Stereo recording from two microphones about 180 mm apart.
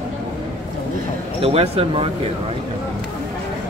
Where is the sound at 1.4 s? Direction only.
35° right (ahead or behind).